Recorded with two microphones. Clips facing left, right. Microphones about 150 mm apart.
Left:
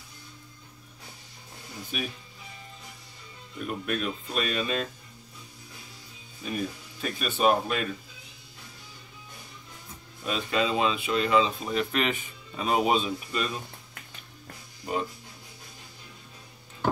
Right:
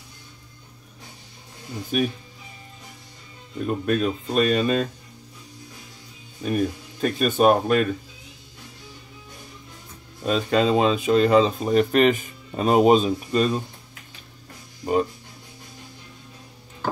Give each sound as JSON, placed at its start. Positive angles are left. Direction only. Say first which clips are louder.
{"t": 1.9, "sound": "speech", "louder": "right 11 dB", "side_deg": -45}
{"t": 3.6, "sound": "speech", "louder": "right 8 dB", "side_deg": -40}
{"t": 6.4, "sound": "speech", "louder": "right 8 dB", "side_deg": -50}
{"t": 10.2, "sound": "speech", "louder": "right 7 dB", "side_deg": -40}